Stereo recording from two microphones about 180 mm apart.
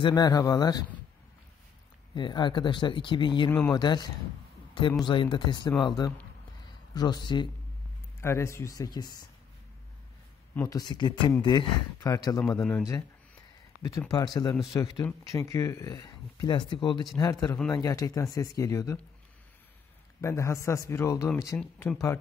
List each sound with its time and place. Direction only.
0.0 s speech: 20° left (ahead or behind)
2.1 s speech: 25° left (ahead or behind)
8.2 s speech: 15° left (ahead or behind)
10.5 s speech: 15° left (ahead or behind)
20.2 s speech: 15° left (ahead or behind)